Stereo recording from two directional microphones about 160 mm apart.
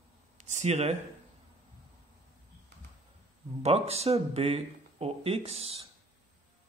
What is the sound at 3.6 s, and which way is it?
Speech, 40° right (ahead or behind).